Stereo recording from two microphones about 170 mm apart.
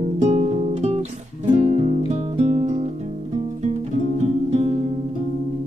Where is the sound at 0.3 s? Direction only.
40° right (ahead or behind).